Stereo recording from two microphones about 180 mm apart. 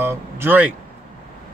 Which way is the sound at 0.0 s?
15° right (ahead or behind).